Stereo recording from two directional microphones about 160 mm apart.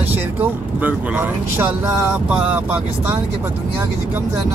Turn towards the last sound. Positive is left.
turn(degrees=-10)  # may be behind; listen again after turning